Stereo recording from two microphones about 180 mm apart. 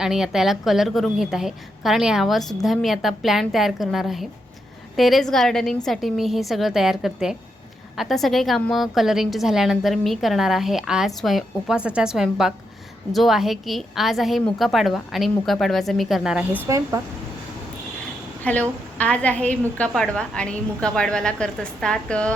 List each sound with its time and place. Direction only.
0.0 s a woman's voice: 5° right (ahead or behind)
16.6 s speech: 15° right (ahead or behind)
18.5 s a woman's voice: 10° left (ahead or behind)